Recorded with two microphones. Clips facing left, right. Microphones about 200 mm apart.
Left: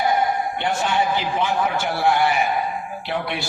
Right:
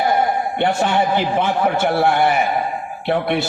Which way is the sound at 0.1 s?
55° right (ahead or behind).